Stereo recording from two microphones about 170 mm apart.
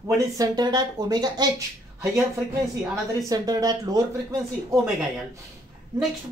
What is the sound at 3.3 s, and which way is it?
Speech, 25° right (ahead or behind).